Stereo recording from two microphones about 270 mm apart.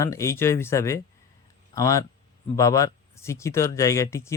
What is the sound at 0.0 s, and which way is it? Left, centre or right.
Speech, centre.